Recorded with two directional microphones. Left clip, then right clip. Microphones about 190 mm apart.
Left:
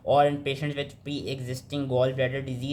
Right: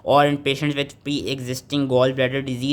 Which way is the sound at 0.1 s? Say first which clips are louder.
Right 5 dB; 35° right (ahead or behind).